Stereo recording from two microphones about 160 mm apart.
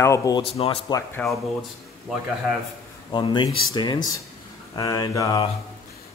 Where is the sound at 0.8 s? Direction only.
20° left (ahead or behind).